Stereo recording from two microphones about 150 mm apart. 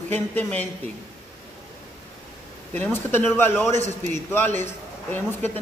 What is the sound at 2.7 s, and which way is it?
A man's voice, 10° left (ahead or behind).